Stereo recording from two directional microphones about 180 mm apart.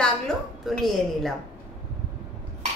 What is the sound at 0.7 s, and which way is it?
Speech, centre (ahead or behind).